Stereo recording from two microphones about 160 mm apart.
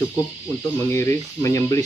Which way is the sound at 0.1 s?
20° left (ahead or behind).